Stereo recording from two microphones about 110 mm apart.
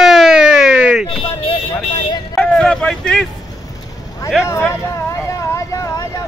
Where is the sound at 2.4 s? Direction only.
5° left (ahead or behind).